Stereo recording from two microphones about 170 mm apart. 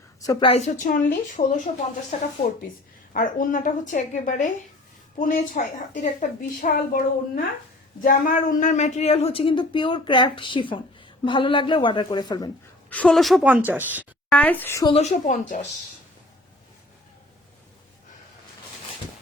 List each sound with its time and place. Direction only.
0.2 s a woman's voice: 20° left (ahead or behind)
0.4 s a woman's voice: 40° left (ahead or behind)
2.1 s a woman's voice: 40° left (ahead or behind)
3.1 s a woman's voice: 55° left (ahead or behind); by 12.5 s 25° left (ahead or behind)
12.9 s a woman's voice: 5° left (ahead or behind); by 14.1 s 10° right (ahead or behind)
14.3 s a woman's voice: 10° left (ahead or behind)
14.8 s a woman's voice: 40° left (ahead or behind)